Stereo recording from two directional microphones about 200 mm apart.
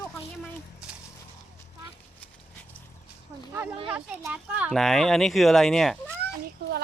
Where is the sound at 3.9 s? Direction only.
5° right (ahead or behind).